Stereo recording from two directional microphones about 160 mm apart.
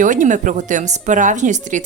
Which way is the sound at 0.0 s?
55° right (ahead or behind).